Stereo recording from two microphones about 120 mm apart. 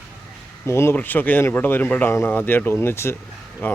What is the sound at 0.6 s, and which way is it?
Speech, 20° left (ahead or behind).